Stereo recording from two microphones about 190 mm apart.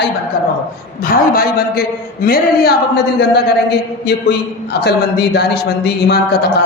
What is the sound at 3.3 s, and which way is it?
A man's voice, 60° left (ahead or behind).